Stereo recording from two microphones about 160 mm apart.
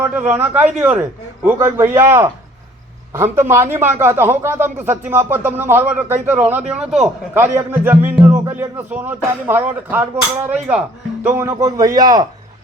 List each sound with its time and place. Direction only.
0.0 s speech: 15° right (ahead or behind)
3.3 s speech: 15° right (ahead or behind)